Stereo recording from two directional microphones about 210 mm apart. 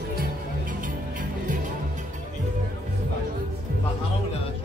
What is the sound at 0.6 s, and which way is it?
Music, 40° right (ahead or behind).